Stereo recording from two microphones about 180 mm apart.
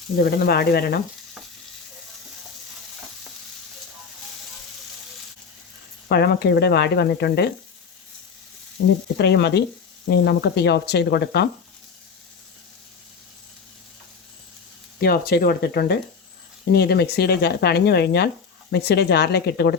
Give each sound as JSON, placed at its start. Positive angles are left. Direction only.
{"t": 0.2, "sound": "speech", "side_deg": 60}
{"t": 6.1, "sound": "speech", "side_deg": 65}
{"t": 9.1, "sound": "speech", "side_deg": 70}
{"t": 14.9, "sound": "speech", "side_deg": 60}